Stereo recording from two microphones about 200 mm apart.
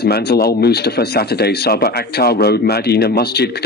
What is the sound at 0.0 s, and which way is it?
Speech, 55° left (ahead or behind).